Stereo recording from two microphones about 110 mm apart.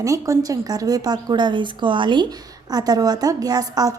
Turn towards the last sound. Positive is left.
turn(degrees=-35)  # may be behind; listen again after turning